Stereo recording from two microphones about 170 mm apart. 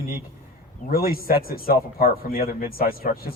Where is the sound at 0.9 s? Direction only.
60° left (ahead or behind).